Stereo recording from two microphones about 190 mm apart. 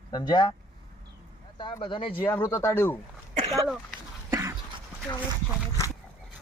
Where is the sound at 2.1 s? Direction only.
10° left (ahead or behind).